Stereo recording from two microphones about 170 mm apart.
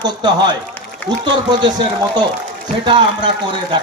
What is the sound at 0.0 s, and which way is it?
Speech, 25° right (ahead or behind).